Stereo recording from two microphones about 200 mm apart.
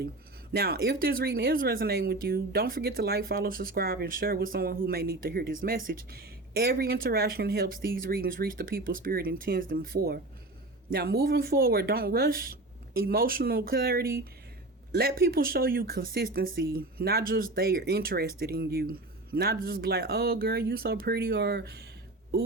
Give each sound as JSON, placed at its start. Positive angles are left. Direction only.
{"t": 0.5, "sound": "speech", "side_deg": -50}